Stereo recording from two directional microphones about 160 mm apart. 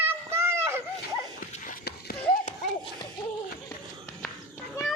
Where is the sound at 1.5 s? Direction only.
55° left (ahead or behind).